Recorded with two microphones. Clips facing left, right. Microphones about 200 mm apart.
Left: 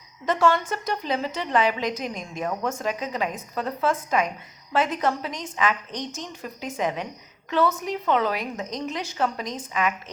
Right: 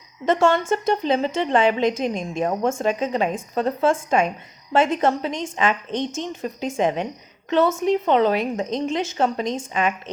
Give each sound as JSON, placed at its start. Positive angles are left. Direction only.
{"t": 0.3, "sound": "a woman's voice", "side_deg": -25}